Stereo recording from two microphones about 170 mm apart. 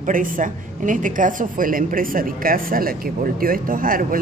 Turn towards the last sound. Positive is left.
turn(degrees=-55)  # may be behind; listen again after turning